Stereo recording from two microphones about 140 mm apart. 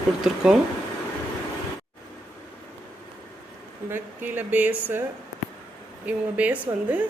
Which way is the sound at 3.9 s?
15° right (ahead or behind).